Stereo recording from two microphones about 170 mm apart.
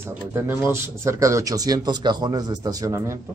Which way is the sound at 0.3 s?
15° right (ahead or behind).